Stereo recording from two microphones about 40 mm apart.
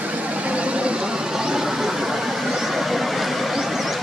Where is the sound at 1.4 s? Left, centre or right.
Centre.